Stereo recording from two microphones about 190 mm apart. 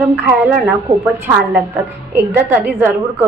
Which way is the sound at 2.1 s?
10° right (ahead or behind).